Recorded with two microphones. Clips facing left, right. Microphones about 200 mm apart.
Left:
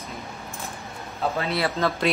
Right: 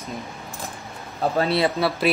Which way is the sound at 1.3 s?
35° right (ahead or behind).